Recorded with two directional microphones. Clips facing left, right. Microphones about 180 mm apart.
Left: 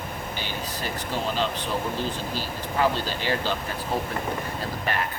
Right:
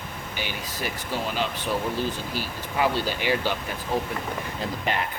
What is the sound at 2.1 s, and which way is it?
Speech, 15° right (ahead or behind).